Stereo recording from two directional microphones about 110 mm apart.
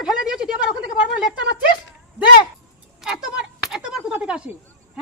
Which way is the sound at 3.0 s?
5° right (ahead or behind).